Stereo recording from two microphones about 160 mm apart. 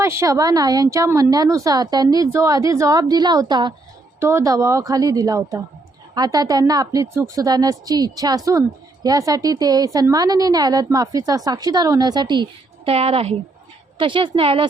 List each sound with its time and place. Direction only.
0.0 s a woman's voice: 15° right (ahead or behind)
4.2 s a woman's voice: 15° right (ahead or behind); by 14.7 s 35° right (ahead or behind)